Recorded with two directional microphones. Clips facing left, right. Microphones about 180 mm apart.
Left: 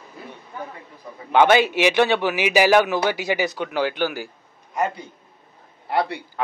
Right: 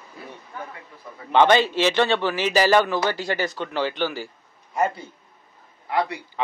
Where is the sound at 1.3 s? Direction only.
10° left (ahead or behind).